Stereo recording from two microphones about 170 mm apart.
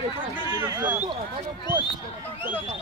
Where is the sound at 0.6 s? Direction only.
10° right (ahead or behind).